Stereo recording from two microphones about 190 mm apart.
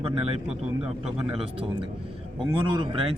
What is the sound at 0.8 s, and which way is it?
Speech, 5° right (ahead or behind).